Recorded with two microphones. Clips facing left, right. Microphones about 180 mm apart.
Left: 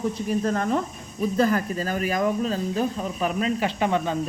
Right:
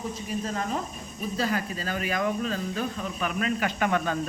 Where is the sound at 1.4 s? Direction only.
45° left (ahead or behind); by 4.2 s 20° left (ahead or behind).